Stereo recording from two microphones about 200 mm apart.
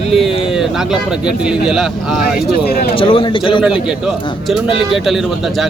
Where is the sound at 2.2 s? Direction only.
50° left (ahead or behind).